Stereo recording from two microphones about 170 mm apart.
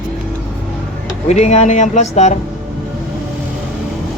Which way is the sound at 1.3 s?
40° left (ahead or behind).